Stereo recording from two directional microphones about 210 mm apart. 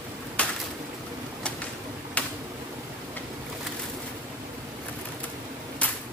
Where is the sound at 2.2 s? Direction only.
5° left (ahead or behind).